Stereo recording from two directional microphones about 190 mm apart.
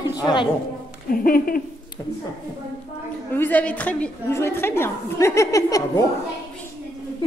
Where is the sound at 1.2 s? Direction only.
50° left (ahead or behind).